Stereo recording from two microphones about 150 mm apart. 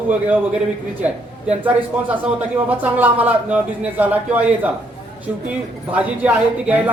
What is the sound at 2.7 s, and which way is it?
A man's voice, 10° right (ahead or behind).